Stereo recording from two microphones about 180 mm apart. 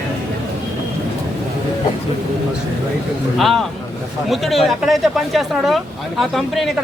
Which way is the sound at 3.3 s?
Centre (ahead or behind).